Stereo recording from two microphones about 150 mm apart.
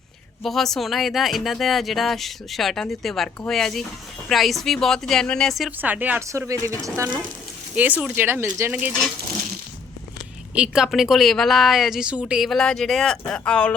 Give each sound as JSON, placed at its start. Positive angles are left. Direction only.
{"t": 0.4, "sound": "speech", "side_deg": 0}
{"t": 5.8, "sound": "speech", "side_deg": -10}
{"t": 10.5, "sound": "speech", "side_deg": -5}